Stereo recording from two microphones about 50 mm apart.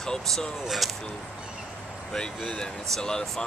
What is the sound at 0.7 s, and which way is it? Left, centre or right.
Speech, centre.